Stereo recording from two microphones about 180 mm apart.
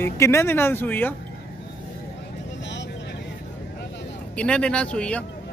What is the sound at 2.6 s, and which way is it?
Vehicle, 80° left.